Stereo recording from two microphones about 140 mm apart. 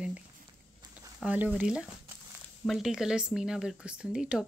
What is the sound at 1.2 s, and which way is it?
Speech, 10° right (ahead or behind).